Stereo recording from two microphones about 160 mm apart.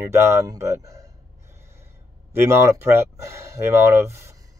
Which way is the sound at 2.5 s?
15° right (ahead or behind).